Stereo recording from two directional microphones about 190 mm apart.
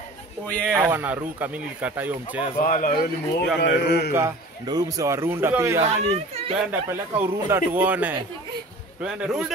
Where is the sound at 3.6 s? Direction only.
60° left (ahead or behind).